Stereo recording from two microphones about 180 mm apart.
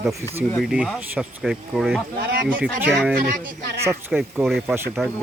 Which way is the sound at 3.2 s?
55° right (ahead or behind).